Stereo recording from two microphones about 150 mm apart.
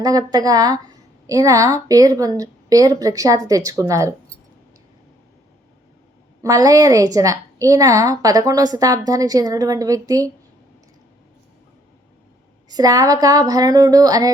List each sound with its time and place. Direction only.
0.0 s a woman's voice: 25° right (ahead or behind)
6.4 s a woman's voice: 25° right (ahead or behind)
12.6 s a woman's voice: 25° right (ahead or behind)